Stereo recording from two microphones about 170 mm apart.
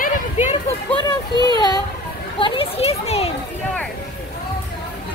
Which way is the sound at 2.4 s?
30° left (ahead or behind).